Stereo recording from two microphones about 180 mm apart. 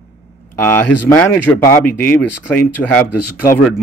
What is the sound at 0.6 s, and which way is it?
Speech, 10° left (ahead or behind).